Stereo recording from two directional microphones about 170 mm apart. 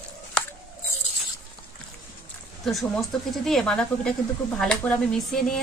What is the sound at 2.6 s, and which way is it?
Speech, centre (ahead or behind).